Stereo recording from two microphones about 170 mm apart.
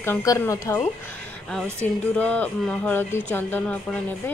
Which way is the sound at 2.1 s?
10° left (ahead or behind).